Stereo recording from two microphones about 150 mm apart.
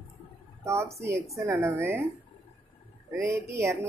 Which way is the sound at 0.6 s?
20° right (ahead or behind).